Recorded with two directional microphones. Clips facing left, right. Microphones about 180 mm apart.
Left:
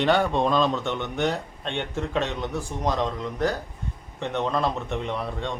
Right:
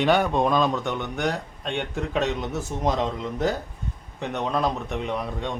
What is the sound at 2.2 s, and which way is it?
Speech, 20° right (ahead or behind).